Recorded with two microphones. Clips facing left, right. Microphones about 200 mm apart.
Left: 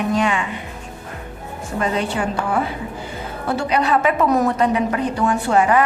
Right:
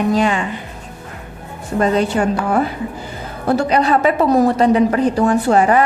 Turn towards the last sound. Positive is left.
turn(degrees=-35)  # may be behind; listen again after turning